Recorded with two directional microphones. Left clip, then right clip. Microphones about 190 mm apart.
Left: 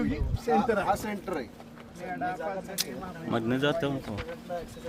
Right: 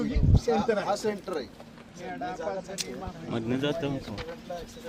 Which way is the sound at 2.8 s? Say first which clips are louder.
Left 1 dB; 55° left (ahead or behind).